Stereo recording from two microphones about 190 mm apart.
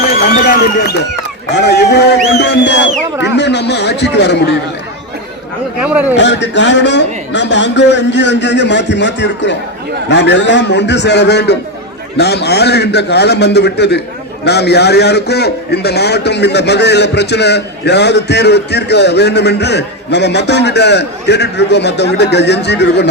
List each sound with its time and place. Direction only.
0.1 s a man's voice: 50° left (ahead or behind)
5.8 s speech: 5° right (ahead or behind)
6.1 s a man's voice: 65° left (ahead or behind)